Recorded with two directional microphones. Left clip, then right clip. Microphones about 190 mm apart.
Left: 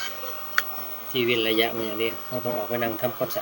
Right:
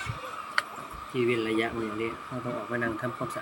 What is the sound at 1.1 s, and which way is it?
Speech, 15° right (ahead or behind).